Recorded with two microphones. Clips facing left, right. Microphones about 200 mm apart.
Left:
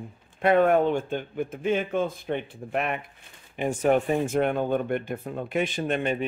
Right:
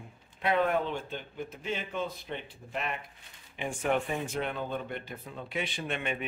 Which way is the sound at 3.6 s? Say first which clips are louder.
Left 8 dB; 40° left (ahead or behind).